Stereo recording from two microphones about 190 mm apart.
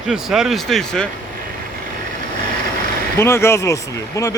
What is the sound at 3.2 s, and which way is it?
Speech, 15° left (ahead or behind).